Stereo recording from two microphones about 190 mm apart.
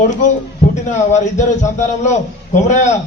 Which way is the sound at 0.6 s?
35° left (ahead or behind).